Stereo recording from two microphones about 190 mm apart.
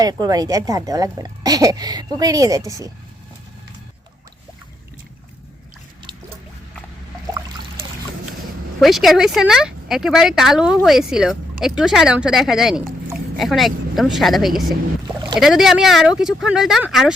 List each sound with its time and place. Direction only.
0.0 s a woman's voice: 20° right (ahead or behind)
8.8 s speech: centre (ahead or behind)